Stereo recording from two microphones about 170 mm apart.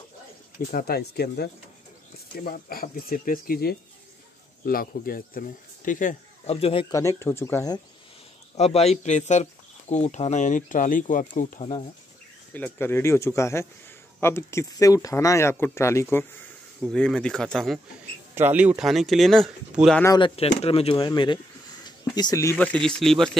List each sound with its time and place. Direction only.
0.6 s speech: 60° left (ahead or behind)
6.5 s speech: 35° left (ahead or behind)
6.9 s speech: 20° left (ahead or behind)
8.5 s speech: 40° left (ahead or behind)
12.5 s speech: 10° left (ahead or behind)
16.8 s speech: 5° left (ahead or behind)
18.3 s speech: 10° right (ahead or behind)
20.2 s speech: 30° left (ahead or behind); by 23.3 s centre (ahead or behind)